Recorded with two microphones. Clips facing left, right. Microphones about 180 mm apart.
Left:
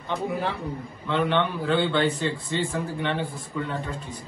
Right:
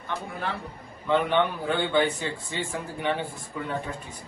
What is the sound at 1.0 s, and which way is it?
A man's voice, 15° right (ahead or behind).